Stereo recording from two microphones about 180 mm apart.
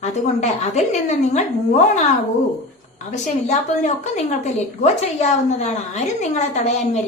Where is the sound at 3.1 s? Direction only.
40° left (ahead or behind).